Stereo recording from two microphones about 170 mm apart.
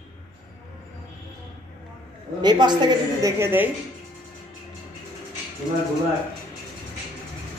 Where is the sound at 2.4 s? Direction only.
25° right (ahead or behind).